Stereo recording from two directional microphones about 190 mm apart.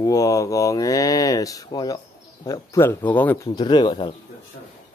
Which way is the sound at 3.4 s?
25° left (ahead or behind).